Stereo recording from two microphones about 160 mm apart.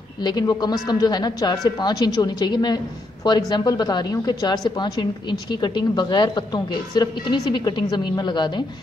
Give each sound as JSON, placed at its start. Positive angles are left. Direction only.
{"t": 0.2, "sound": "a woman's voice", "side_deg": 25}